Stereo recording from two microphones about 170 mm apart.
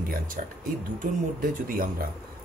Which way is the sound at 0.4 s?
55° right (ahead or behind).